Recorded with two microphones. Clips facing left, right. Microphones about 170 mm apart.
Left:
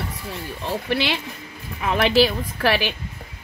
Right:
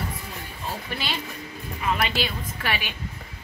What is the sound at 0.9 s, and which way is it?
A woman's voice, 80° left.